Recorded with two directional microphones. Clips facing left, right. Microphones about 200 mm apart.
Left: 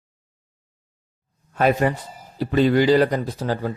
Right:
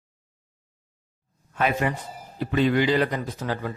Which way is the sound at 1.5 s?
40° left (ahead or behind).